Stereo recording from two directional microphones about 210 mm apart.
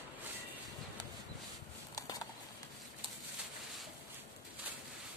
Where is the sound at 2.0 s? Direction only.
15° left (ahead or behind).